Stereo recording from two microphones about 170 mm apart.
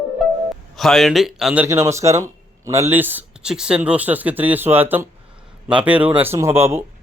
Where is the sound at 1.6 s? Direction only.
15° right (ahead or behind).